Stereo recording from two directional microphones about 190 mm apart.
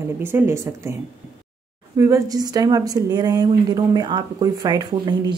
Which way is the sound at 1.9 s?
15° right (ahead or behind).